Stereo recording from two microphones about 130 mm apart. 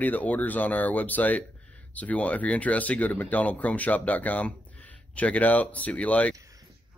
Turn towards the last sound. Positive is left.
turn(degrees=10)  # may be behind; listen again after turning